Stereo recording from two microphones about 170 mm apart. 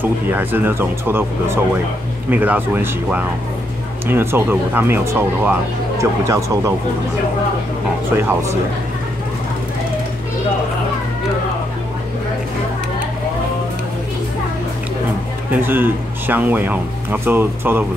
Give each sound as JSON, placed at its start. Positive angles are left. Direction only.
{"t": 0.3, "sound": "speech", "side_deg": -10}
{"t": 8.2, "sound": "speech", "side_deg": -15}
{"t": 15.5, "sound": "speech", "side_deg": -10}